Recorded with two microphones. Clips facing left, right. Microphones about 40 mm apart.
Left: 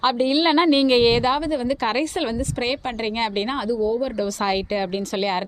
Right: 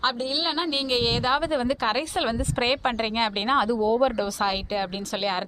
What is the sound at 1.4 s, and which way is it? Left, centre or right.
Speech, right.